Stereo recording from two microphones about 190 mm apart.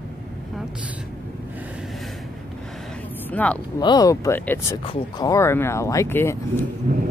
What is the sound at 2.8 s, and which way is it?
Vehicle, 5° left (ahead or behind).